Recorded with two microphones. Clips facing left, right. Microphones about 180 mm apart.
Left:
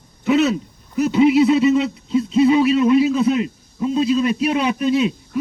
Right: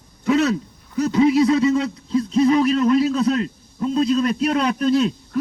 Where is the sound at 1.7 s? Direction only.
5° left (ahead or behind).